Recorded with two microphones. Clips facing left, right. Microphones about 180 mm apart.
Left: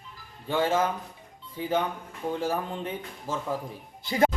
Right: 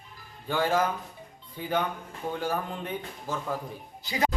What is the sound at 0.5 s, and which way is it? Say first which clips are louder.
Speech: left 1 dB; centre (ahead or behind).